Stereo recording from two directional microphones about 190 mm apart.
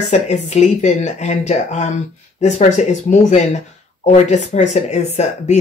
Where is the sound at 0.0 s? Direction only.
35° left (ahead or behind).